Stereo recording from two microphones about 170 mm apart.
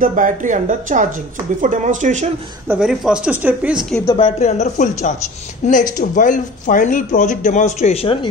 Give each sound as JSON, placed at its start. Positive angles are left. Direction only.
{"t": 0.0, "sound": "speech", "side_deg": -50}
{"t": 2.7, "sound": "speech", "side_deg": -5}
{"t": 4.2, "sound": "speech", "side_deg": 40}